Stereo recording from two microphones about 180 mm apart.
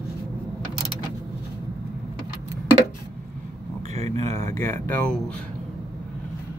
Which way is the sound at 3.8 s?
35° right (ahead or behind).